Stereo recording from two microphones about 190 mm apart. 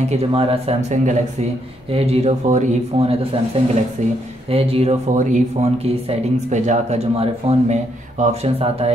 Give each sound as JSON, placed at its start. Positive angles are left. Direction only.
{"t": 0.1, "sound": "speech", "side_deg": -30}
{"t": 4.5, "sound": "speech", "side_deg": -30}